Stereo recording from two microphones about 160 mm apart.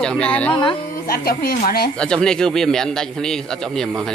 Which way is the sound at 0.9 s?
70° left (ahead or behind).